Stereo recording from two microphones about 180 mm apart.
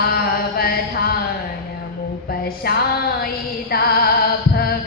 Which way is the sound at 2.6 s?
60° left (ahead or behind).